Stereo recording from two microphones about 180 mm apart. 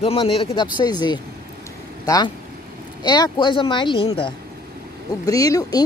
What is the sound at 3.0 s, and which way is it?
Speech, 25° left (ahead or behind).